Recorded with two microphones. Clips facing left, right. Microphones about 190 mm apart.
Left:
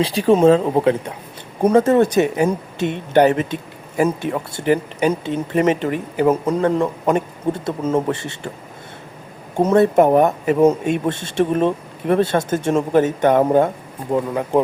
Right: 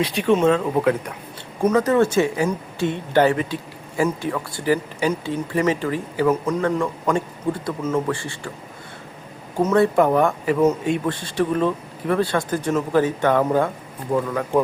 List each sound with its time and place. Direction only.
0.0 s speech: 35° left (ahead or behind)
9.6 s speech: 25° left (ahead or behind)